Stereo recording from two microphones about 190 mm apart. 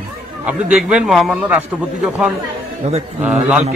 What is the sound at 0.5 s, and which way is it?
A man's voice, 5° right (ahead or behind).